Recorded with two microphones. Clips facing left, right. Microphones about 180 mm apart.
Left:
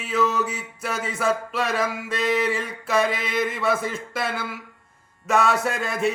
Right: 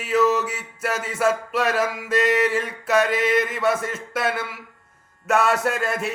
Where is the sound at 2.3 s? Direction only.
5° right (ahead or behind).